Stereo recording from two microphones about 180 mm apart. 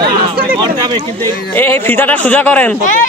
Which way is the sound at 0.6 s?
25° right (ahead or behind).